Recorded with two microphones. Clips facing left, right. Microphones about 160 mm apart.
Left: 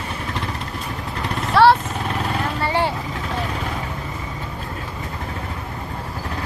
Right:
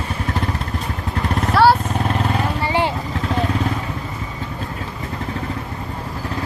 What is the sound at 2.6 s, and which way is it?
Vehicle, 15° right (ahead or behind).